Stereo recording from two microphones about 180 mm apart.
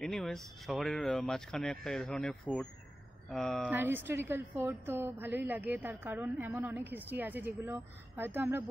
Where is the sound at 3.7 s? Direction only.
10° right (ahead or behind).